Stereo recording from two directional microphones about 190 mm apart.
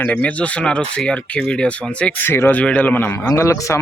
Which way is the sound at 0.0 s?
10° left (ahead or behind).